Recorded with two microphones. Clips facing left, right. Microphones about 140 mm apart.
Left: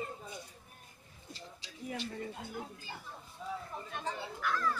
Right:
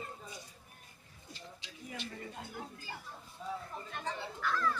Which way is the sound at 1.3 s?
35° left (ahead or behind).